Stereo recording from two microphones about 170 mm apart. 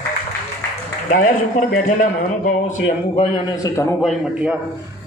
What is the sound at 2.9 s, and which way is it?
A man's voice, 30° left (ahead or behind).